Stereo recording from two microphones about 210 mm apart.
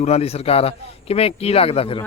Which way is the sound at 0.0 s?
30° left (ahead or behind).